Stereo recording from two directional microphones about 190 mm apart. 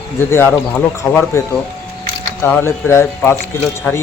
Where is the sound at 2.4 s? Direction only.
10° left (ahead or behind).